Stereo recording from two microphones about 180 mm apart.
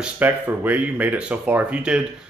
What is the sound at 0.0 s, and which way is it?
Speech, 10° right (ahead or behind).